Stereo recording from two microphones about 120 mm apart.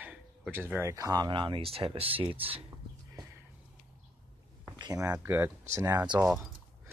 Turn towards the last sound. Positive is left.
turn(degrees=-35)  # may be behind; listen again after turning